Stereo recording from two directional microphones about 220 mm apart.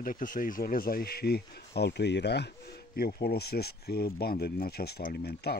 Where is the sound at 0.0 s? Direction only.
40° left (ahead or behind).